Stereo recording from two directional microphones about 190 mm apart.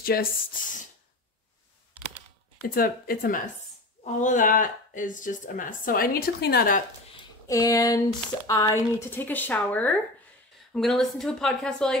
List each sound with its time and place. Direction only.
0.0 s speech: 50° left (ahead or behind)
2.6 s speech: 50° left (ahead or behind)
7.4 s a sound: 15° left (ahead or behind)
8.5 s speech: 15° left (ahead or behind)